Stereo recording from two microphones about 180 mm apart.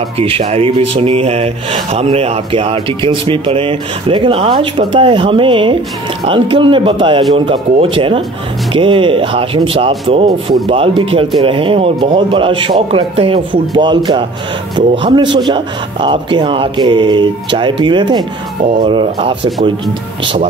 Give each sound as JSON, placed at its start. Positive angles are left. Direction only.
{"t": 0.2, "sound": "speech", "side_deg": -35}